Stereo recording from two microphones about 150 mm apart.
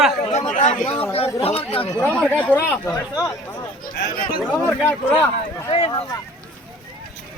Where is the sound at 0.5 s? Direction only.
55° left (ahead or behind).